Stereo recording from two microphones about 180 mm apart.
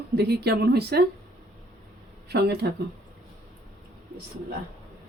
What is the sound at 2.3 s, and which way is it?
Speech, 65° right (ahead or behind).